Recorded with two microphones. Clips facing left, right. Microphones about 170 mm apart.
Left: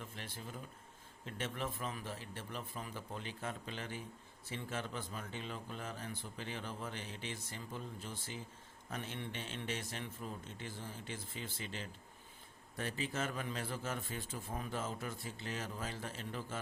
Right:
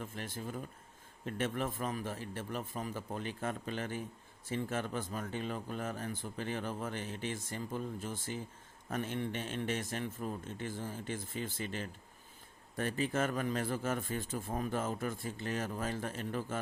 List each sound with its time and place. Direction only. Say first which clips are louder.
0.0 s speech: right 6 dB; 45° right (ahead or behind)